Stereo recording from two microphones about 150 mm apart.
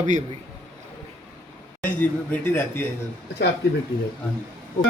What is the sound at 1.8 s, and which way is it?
Speech, 10° left (ahead or behind).